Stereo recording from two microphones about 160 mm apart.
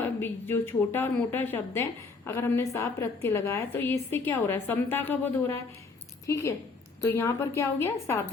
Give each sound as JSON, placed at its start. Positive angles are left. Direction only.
{"t": 0.0, "sound": "a woman's voice", "side_deg": 15}